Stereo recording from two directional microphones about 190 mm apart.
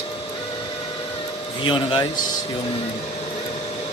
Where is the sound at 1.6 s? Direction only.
20° left (ahead or behind).